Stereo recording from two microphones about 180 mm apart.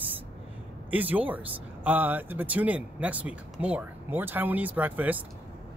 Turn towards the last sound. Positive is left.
turn(degrees=-10)  # may be behind; listen again after turning